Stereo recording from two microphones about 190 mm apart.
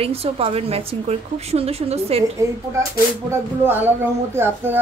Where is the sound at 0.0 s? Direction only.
30° right (ahead or behind).